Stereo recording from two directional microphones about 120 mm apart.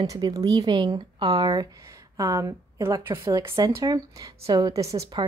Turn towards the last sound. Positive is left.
turn(degrees=-25)  # may be behind; listen again after turning